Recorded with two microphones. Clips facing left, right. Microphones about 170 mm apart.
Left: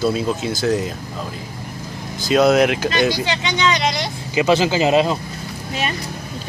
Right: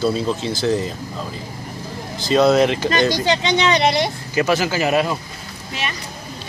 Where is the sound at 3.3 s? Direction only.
30° right (ahead or behind).